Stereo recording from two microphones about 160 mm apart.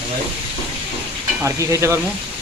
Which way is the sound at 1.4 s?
20° right (ahead or behind).